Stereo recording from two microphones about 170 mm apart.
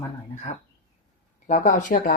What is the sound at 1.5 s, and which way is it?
Speech, 50° left (ahead or behind).